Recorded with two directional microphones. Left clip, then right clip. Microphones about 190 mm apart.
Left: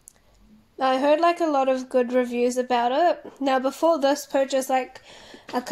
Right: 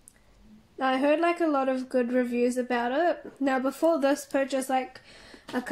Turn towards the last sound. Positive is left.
turn(degrees=-40)  # may be behind; listen again after turning